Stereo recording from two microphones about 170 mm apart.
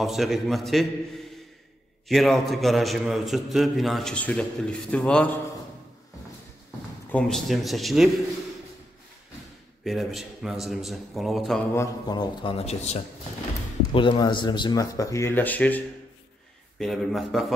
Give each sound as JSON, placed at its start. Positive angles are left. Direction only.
{"t": 0.0, "sound": "a man's voice", "side_deg": 0}
{"t": 2.0, "sound": "a man's voice", "side_deg": 0}
{"t": 7.1, "sound": "a man's voice", "side_deg": 5}
{"t": 9.8, "sound": "a man's voice", "side_deg": 0}
{"t": 11.7, "sound": "speech", "side_deg": 20}
{"t": 13.9, "sound": "a man's voice", "side_deg": 30}